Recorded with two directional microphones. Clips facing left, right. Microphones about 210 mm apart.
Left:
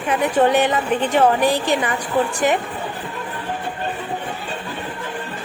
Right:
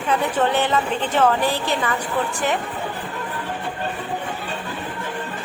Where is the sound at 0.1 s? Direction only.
15° left (ahead or behind).